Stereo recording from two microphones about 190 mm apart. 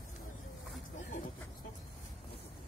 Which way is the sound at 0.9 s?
40° left (ahead or behind).